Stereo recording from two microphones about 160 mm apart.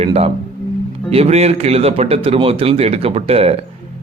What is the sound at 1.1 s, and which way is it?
Speech, 40° right (ahead or behind).